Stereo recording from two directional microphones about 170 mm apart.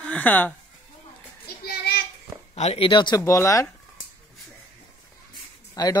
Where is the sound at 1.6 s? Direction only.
70° left (ahead or behind).